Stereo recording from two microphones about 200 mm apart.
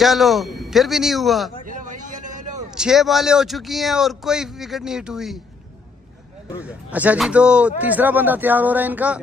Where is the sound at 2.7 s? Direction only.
5° right (ahead or behind).